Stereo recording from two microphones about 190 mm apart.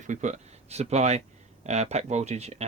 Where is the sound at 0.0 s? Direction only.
40° right (ahead or behind).